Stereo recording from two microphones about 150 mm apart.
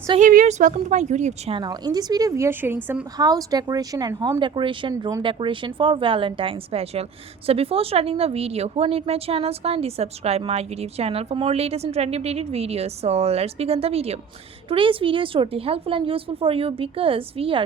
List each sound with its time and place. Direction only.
0.2 s speech: 60° right (ahead or behind)
1.5 s a woman's voice: 25° right (ahead or behind)
3.2 s a woman's voice: 25° right (ahead or behind)